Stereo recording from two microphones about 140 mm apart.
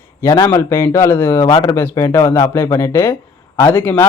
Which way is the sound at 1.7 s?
15° left (ahead or behind).